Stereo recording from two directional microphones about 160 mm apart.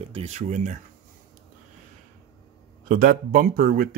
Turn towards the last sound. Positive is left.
turn(degrees=-65)  # may be behind; listen again after turning